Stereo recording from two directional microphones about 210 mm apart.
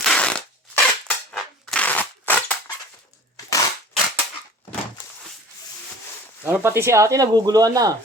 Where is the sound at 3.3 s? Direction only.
15° left (ahead or behind).